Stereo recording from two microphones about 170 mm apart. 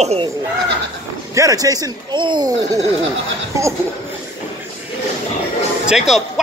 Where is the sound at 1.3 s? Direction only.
20° right (ahead or behind).